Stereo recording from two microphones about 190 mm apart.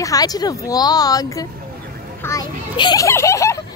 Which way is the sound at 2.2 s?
20° left (ahead or behind).